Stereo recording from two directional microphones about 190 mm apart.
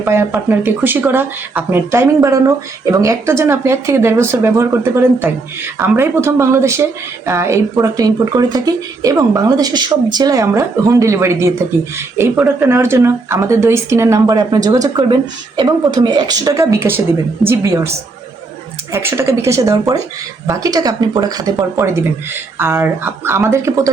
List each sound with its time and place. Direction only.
0.0 s speech: 10° right (ahead or behind)
18.9 s speech: 15° right (ahead or behind)